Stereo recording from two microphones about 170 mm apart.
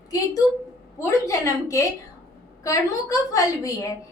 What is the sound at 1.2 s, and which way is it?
A woman's voice, 20° left (ahead or behind).